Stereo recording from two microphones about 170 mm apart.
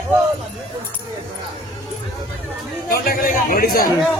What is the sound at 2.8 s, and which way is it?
Chatter, 60° left (ahead or behind).